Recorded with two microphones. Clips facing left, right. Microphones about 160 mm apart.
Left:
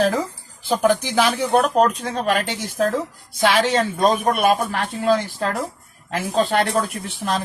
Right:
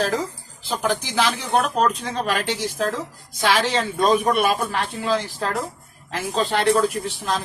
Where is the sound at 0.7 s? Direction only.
50° left (ahead or behind).